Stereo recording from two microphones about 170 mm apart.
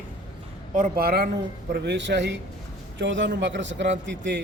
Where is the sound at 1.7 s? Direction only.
85° right.